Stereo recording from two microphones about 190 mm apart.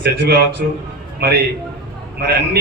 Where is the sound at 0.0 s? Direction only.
60° right (ahead or behind).